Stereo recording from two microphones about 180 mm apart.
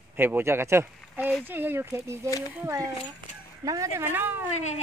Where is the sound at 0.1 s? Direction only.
10° right (ahead or behind).